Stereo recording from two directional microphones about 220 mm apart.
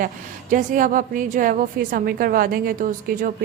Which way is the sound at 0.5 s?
35° right (ahead or behind).